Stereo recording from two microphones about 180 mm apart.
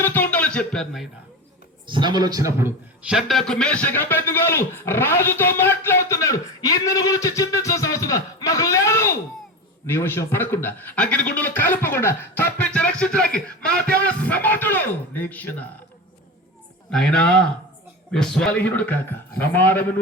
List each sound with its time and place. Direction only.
0.0 s a sound: 10° left (ahead or behind)
1.9 s a man's voice: 25° right (ahead or behind)
3.1 s speech: centre (ahead or behind)
16.9 s speech: 5° left (ahead or behind)